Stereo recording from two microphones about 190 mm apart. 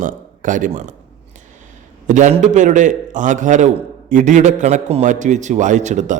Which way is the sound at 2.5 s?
40° right (ahead or behind).